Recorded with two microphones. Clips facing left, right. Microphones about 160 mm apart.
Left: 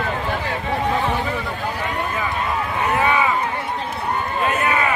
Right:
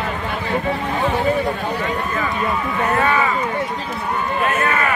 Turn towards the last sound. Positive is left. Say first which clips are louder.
# right 1 dB
turn(degrees=15)  # may be behind; listen again after turning